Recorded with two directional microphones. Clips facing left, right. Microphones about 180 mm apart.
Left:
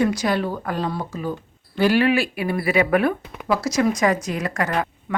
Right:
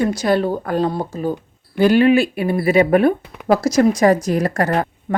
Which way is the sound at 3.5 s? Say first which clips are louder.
Right 6 dB; 40° right (ahead or behind).